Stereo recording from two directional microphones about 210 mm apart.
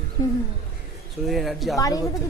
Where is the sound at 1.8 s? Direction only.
15° left (ahead or behind).